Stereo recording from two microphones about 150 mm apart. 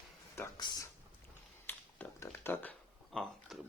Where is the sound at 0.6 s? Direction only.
30° left (ahead or behind).